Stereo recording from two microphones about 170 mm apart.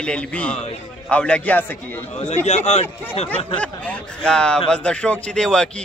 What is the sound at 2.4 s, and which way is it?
Speech, 40° left (ahead or behind).